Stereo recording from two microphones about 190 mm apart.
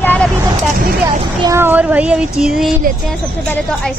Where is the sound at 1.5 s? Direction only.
10° right (ahead or behind).